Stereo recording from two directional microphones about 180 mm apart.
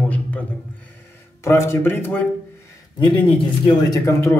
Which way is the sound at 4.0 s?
15° left (ahead or behind).